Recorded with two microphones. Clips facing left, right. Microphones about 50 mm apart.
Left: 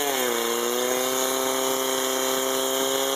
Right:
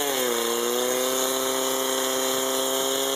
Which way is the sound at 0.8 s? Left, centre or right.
Left.